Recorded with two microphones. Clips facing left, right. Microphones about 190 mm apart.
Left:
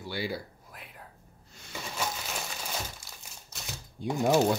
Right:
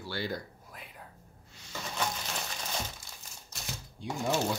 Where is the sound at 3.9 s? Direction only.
45° left (ahead or behind).